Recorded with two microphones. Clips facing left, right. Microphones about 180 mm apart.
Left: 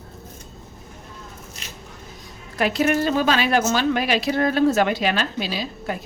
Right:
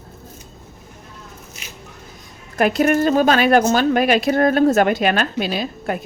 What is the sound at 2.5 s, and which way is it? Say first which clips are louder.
Speech: right 4 dB; 50° right (ahead or behind).